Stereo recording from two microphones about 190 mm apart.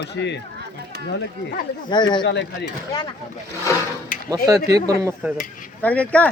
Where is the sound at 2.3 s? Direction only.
65° left (ahead or behind).